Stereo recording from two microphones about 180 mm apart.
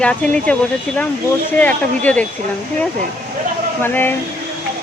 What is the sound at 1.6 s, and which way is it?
Speech, 10° left (ahead or behind).